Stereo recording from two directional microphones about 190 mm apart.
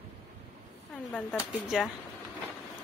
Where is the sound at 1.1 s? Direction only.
5° left (ahead or behind).